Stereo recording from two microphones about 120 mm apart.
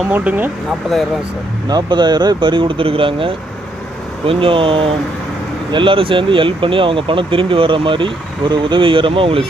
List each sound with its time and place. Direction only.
0.1 s speech: 15° right (ahead or behind)
0.9 s speech: centre (ahead or behind)
1.6 s speech: 35° right (ahead or behind)